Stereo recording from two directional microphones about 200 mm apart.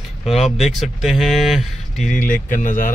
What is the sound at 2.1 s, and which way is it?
Speech, 40° left (ahead or behind).